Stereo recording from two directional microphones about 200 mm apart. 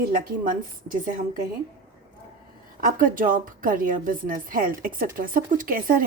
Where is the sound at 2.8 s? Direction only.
45° right (ahead or behind).